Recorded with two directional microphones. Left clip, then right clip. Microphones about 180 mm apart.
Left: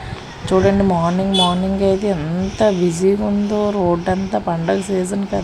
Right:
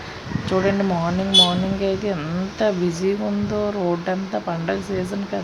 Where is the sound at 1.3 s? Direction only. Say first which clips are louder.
Right 4 dB; 15° left (ahead or behind).